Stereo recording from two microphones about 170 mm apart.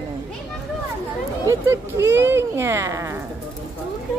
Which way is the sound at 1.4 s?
15° right (ahead or behind).